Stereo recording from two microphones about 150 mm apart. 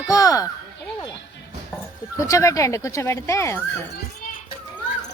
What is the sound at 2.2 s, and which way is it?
Speech, 20° left (ahead or behind).